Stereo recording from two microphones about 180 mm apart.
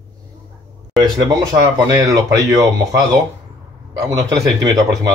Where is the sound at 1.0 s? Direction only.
20° right (ahead or behind).